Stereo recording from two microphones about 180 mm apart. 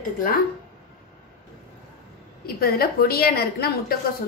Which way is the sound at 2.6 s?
55° left (ahead or behind).